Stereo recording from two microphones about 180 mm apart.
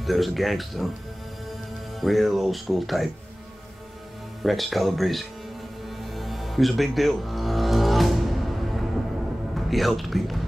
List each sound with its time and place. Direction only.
0.0 s speech: centre (ahead or behind)
2.0 s speech: centre (ahead or behind)
4.4 s speech: centre (ahead or behind)
5.9 s music: centre (ahead or behind)
9.7 s speech: centre (ahead or behind)